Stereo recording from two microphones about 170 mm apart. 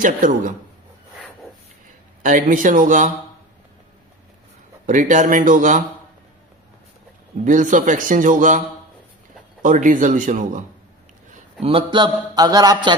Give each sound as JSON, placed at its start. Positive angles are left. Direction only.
{"t": 0.0, "sound": "a man's voice", "side_deg": -50}
{"t": 2.2, "sound": "a man's voice", "side_deg": -50}
{"t": 4.9, "sound": "a man's voice", "side_deg": -45}
{"t": 7.4, "sound": "a man's voice", "side_deg": -50}
{"t": 9.6, "sound": "a man's voice", "side_deg": -50}
{"t": 11.6, "sound": "speech", "side_deg": -30}